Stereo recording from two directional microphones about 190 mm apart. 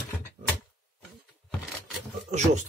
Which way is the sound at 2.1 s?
40° right (ahead or behind).